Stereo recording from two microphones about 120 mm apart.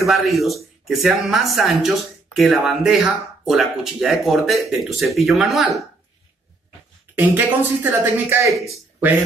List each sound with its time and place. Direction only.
0.0 s speech: centre (ahead or behind)
7.2 s speech: 15° right (ahead or behind)